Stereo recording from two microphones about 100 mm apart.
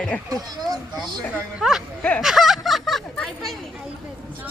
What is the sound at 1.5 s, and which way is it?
Speech, 5° right (ahead or behind).